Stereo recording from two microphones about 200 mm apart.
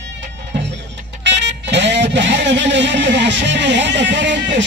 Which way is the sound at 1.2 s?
60° right (ahead or behind).